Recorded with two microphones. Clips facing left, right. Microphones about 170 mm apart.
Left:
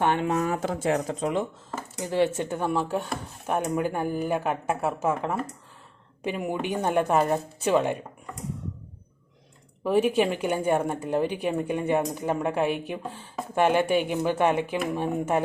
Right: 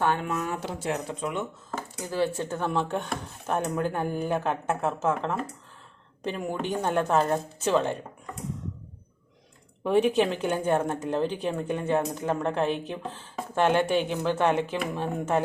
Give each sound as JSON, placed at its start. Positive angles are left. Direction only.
{"t": 0.0, "sound": "speech", "side_deg": 20}
{"t": 0.5, "sound": "speech", "side_deg": 90}
{"t": 1.0, "sound": "speech", "side_deg": 35}
{"t": 2.0, "sound": "speech", "side_deg": 25}
{"t": 9.8, "sound": "speech", "side_deg": 5}